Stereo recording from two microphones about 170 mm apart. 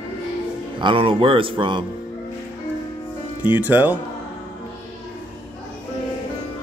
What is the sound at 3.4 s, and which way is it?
Speech, 10° right (ahead or behind).